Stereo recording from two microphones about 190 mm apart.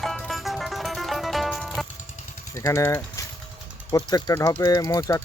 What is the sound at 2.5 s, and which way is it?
Speech, 15° left (ahead or behind).